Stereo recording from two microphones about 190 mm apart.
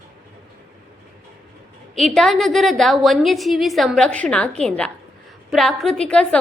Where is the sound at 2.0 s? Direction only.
Centre (ahead or behind).